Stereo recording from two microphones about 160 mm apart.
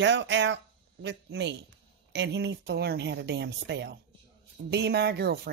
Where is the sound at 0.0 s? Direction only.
90° right.